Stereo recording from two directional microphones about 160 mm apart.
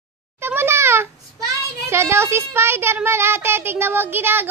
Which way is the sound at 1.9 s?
15° right (ahead or behind).